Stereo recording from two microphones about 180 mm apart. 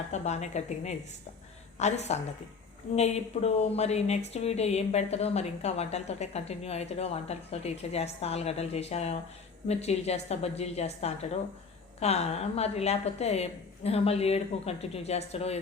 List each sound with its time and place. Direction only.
0.1 s speech: 40° left (ahead or behind)